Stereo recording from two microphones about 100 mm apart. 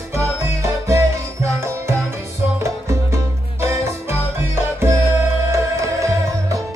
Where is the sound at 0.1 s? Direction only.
25° right (ahead or behind).